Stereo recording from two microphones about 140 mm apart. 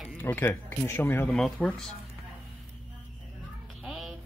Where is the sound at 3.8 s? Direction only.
Centre (ahead or behind).